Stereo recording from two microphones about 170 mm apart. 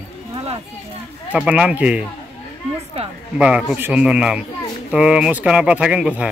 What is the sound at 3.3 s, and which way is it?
Speech, 5° right (ahead or behind).